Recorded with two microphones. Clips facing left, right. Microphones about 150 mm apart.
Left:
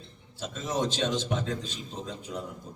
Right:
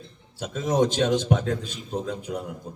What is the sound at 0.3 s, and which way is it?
A man's voice, 60° right (ahead or behind).